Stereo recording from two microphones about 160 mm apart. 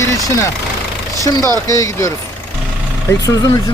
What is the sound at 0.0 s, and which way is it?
Speech, 20° left (ahead or behind).